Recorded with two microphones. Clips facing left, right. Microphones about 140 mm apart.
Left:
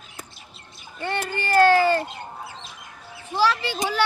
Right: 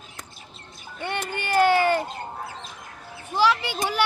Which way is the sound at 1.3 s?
15° right (ahead or behind).